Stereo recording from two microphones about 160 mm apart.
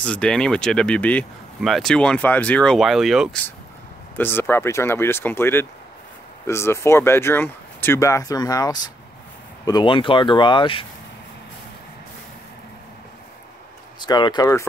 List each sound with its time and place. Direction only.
0.0 s speech: 5° left (ahead or behind)
4.2 s speech: 15° left (ahead or behind); by 10.9 s 30° left (ahead or behind)
13.9 s speech: 25° left (ahead or behind)